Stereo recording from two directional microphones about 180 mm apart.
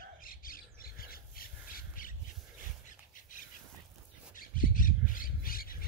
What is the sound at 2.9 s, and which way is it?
Bird, 45° left (ahead or behind).